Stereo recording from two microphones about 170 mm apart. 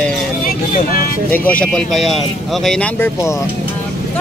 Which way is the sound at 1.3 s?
10° left (ahead or behind).